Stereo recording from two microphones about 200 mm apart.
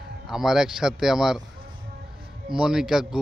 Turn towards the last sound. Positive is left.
turn(degrees=-5)  # may be behind; listen again after turning